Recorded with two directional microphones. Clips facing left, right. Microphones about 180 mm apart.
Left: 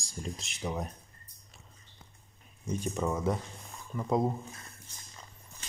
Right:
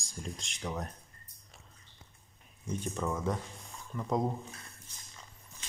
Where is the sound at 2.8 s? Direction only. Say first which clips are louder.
Left 3 dB; 10° left (ahead or behind).